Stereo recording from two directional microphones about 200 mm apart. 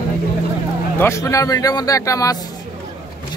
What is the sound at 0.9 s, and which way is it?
Speech, 15° left (ahead or behind).